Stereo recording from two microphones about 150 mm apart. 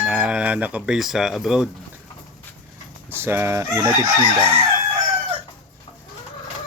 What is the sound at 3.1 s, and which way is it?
Fowl, 15° right (ahead or behind).